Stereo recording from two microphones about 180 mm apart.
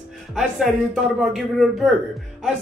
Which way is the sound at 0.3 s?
Centre (ahead or behind).